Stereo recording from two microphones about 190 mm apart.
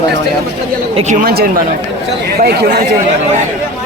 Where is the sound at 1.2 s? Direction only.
55° right (ahead or behind).